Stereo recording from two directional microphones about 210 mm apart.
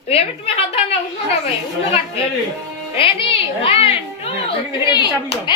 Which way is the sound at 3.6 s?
25° left (ahead or behind).